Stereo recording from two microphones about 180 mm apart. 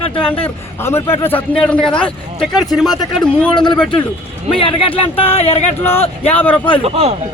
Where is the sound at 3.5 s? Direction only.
25° left (ahead or behind).